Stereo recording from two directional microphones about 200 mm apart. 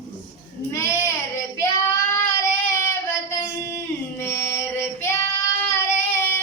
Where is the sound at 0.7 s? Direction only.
15° left (ahead or behind).